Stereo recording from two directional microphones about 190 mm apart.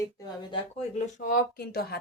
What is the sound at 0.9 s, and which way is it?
Speech, 40° left (ahead or behind).